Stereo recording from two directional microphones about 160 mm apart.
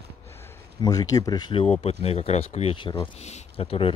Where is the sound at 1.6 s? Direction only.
40° left (ahead or behind).